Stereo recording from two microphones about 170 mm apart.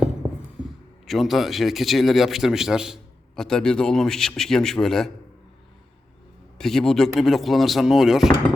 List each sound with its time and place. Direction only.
1.0 s a man's voice: centre (ahead or behind)
6.6 s a man's voice: 5° left (ahead or behind)